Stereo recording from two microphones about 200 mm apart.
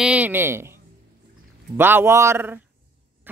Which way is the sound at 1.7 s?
10° right (ahead or behind).